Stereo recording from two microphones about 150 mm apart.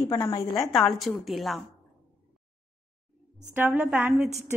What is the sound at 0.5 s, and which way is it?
A woman's voice, centre (ahead or behind).